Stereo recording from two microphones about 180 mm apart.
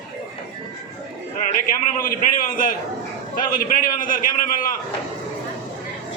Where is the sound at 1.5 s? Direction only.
50° left (ahead or behind).